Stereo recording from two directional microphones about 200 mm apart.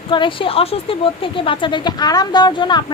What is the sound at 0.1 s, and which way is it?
Speech, 25° left (ahead or behind).